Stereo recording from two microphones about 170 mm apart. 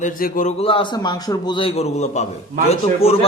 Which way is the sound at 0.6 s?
30° left (ahead or behind).